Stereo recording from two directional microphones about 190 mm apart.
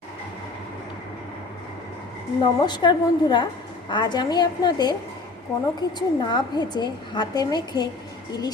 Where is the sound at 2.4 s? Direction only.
25° left (ahead or behind).